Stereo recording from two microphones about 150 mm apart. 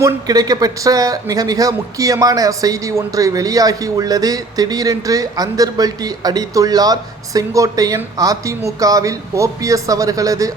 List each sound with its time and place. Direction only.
0.0 s speech: 25° right (ahead or behind)